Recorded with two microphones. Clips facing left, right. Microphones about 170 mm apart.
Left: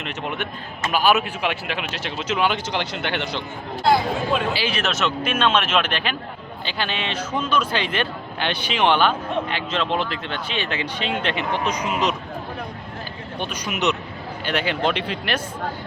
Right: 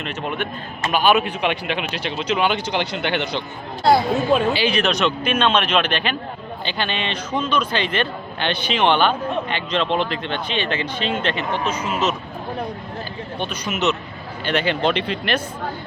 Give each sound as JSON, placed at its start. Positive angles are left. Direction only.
{"t": 0.9, "sound": "speech", "side_deg": 5}
{"t": 4.5, "sound": "speech", "side_deg": 5}
{"t": 13.4, "sound": "speech", "side_deg": 10}